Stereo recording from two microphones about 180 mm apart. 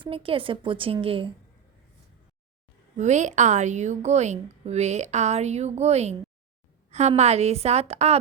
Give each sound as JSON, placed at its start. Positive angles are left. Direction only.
{"t": 0.0, "sound": "a woman's voice", "side_deg": -30}
{"t": 3.0, "sound": "a woman's voice", "side_deg": -40}